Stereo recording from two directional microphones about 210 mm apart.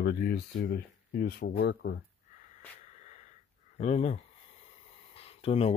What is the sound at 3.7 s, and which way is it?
Speech, 35° left (ahead or behind).